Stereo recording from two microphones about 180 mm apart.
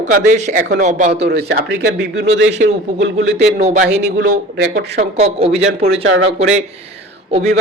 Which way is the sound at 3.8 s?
75° right (ahead or behind).